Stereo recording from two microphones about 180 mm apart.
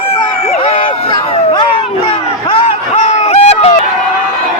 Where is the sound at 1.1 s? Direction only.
25° left (ahead or behind).